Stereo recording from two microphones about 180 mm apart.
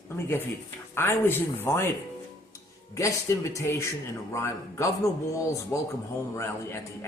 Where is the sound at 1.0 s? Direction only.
10° left (ahead or behind).